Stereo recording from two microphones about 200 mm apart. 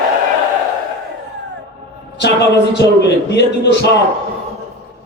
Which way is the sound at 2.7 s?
60° left (ahead or behind).